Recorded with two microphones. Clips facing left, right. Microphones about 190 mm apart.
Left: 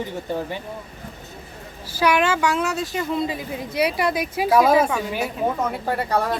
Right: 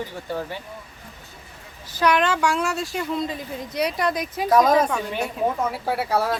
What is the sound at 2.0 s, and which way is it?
Speech, 5° left (ahead or behind).